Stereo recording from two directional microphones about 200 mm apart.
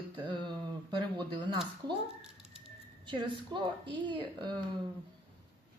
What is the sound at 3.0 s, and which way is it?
Speech, 25° right (ahead or behind).